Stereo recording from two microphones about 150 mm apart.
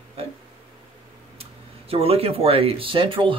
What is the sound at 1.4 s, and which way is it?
Speech, 40° right (ahead or behind).